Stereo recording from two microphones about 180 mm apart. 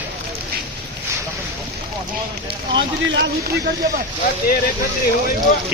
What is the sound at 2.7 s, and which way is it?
Speech, 90° right.